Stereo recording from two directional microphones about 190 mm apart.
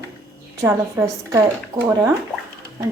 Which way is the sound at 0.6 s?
15° right (ahead or behind).